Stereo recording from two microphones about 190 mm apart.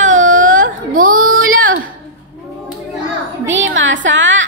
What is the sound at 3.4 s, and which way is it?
A woman's voice, 75° right (ahead or behind).